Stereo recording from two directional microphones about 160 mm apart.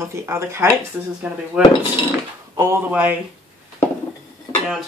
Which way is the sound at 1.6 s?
5° right (ahead or behind).